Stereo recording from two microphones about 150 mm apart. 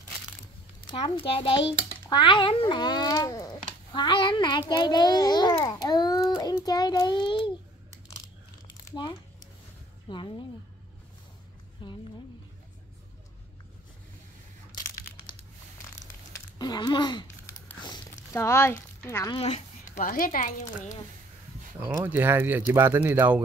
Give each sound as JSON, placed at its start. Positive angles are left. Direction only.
{"t": 0.7, "sound": "a child's voice", "side_deg": 35}
{"t": 8.6, "sound": "a sound", "side_deg": 30}
{"t": 10.0, "sound": "a child's voice", "side_deg": 30}
{"t": 11.8, "sound": "a sound", "side_deg": 30}
{"t": 16.5, "sound": "a sound", "side_deg": 30}
{"t": 18.3, "sound": "speech", "side_deg": 20}
{"t": 19.3, "sound": "a woman's voice", "side_deg": 45}
{"t": 20.0, "sound": "a woman's voice", "side_deg": 65}
{"t": 21.8, "sound": "speech", "side_deg": -20}